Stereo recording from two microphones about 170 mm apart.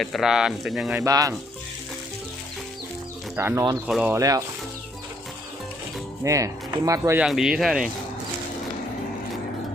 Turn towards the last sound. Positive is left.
turn(degrees=0)  # may be behind; listen again after turning